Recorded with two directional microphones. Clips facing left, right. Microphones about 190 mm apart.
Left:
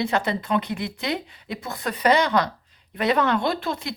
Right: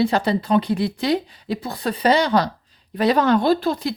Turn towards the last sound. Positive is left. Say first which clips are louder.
# right 7 dB
turn(degrees=-35)  # may be behind; listen again after turning